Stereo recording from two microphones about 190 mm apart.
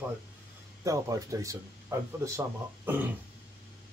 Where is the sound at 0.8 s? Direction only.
20° right (ahead or behind).